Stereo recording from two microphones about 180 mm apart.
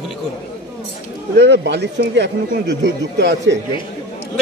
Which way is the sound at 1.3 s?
70° right (ahead or behind).